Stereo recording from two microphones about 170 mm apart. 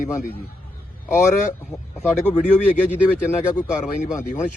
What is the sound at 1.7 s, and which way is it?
Speech, 15° left (ahead or behind).